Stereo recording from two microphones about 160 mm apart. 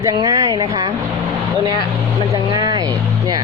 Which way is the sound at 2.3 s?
25° right (ahead or behind).